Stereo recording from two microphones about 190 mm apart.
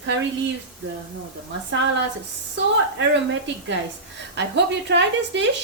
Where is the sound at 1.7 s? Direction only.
70° right (ahead or behind).